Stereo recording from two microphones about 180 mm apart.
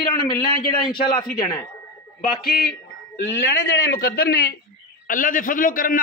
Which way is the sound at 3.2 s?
80° left.